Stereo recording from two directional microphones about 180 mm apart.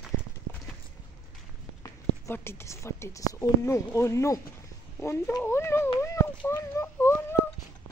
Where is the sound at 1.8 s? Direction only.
15° left (ahead or behind).